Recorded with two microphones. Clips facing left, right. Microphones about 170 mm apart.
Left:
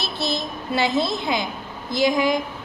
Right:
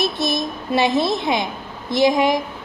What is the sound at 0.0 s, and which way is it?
A child's voice, 20° right (ahead or behind).